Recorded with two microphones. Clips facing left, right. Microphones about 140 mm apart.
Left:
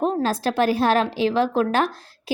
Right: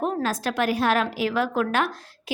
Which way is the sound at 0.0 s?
30° left (ahead or behind).